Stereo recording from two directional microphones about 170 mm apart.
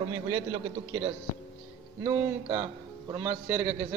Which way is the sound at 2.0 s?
15° right (ahead or behind).